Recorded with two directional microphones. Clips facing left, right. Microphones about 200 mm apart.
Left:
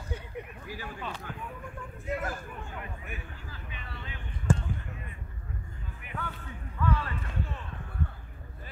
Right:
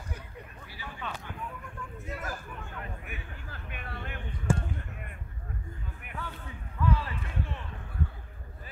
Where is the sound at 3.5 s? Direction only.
55° right (ahead or behind).